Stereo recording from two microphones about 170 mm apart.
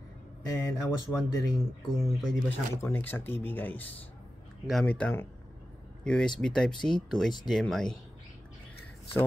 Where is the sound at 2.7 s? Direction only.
10° left (ahead or behind).